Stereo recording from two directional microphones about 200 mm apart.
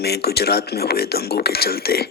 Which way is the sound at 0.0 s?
55° left (ahead or behind).